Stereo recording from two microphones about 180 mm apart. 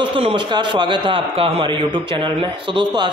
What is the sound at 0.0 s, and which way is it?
A man's voice, 30° right (ahead or behind).